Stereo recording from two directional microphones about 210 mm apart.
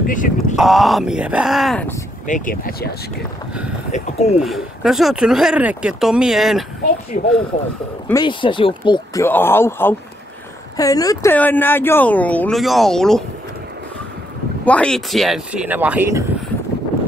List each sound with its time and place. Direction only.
0.0 s speech: 40° left (ahead or behind)
0.6 s speech: centre (ahead or behind)
2.2 s speech: 40° left (ahead or behind)
3.9 s speech: 30° left (ahead or behind)
4.4 s speech: centre (ahead or behind)
7.1 s speech: 35° left (ahead or behind)
8.1 s speech: 20° left (ahead or behind); by 13.2 s centre (ahead or behind)
14.6 s speech: 5° left (ahead or behind); by 16.3 s 10° right (ahead or behind)